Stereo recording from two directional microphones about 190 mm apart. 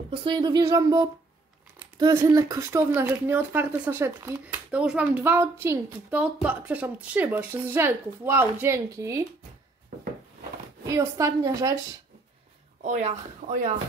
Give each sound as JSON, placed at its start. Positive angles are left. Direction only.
{"t": 0.1, "sound": "speech", "side_deg": -25}
{"t": 10.9, "sound": "speech", "side_deg": -15}
{"t": 12.8, "sound": "speech", "side_deg": -35}